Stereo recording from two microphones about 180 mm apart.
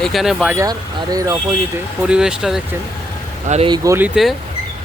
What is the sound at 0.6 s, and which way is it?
Speech, 20° right (ahead or behind).